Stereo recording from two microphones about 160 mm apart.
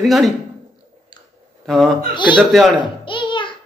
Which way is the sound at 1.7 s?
Centre (ahead or behind).